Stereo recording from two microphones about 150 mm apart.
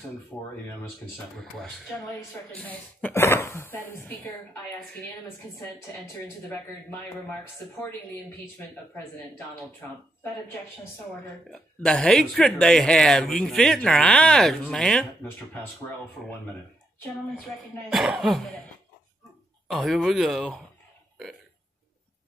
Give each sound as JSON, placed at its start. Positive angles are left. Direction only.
{"t": 0.3, "sound": "speech", "side_deg": 0}
{"t": 11.5, "sound": "speech", "side_deg": 5}
{"t": 17.9, "sound": "speech", "side_deg": -5}
{"t": 19.7, "sound": "speech", "side_deg": 0}